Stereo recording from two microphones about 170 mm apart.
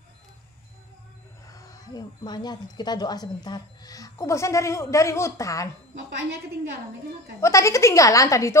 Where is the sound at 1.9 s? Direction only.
25° left (ahead or behind).